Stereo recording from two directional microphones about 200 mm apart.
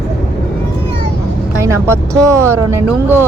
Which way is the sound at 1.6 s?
15° right (ahead or behind).